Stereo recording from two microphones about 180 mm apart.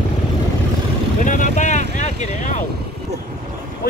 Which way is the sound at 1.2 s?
45° left (ahead or behind).